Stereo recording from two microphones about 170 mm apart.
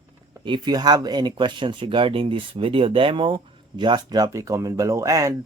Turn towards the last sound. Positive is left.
turn(degrees=-20)  # may be behind; listen again after turning